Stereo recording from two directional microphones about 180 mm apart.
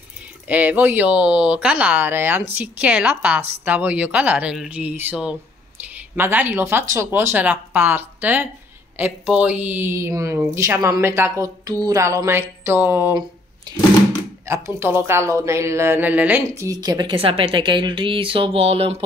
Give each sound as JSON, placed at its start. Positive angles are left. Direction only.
{"t": 0.5, "sound": "a woman's voice", "side_deg": -10}
{"t": 14.4, "sound": "a woman's voice", "side_deg": -15}